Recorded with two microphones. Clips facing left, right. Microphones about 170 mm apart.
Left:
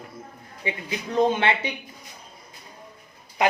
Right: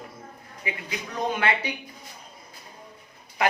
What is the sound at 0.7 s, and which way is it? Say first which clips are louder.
Speech: left 4 dB; 30° left (ahead or behind).